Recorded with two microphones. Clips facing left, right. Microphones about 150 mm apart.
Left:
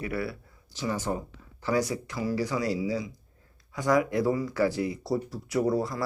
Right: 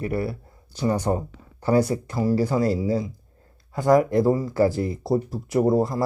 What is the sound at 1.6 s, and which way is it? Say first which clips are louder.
Speech: right 7 dB; 55° right (ahead or behind).